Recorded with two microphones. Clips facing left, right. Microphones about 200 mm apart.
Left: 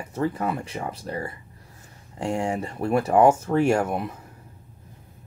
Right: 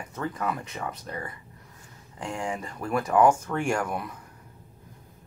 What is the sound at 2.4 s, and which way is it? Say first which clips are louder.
Speech: left 6 dB; 30° left (ahead or behind).